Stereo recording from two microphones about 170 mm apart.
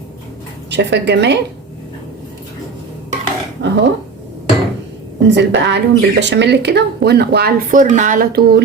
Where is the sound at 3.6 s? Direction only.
90° right.